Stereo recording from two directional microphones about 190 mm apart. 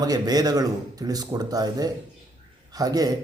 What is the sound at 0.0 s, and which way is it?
Speech, 20° right (ahead or behind).